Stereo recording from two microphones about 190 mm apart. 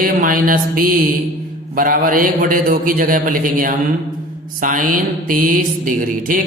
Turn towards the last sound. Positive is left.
turn(degrees=-45)  # may be behind; listen again after turning